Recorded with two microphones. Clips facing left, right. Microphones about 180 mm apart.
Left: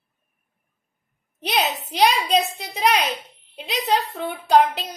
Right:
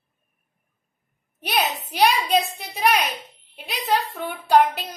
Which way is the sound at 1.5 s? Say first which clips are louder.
Left 1 dB; 25° left (ahead or behind).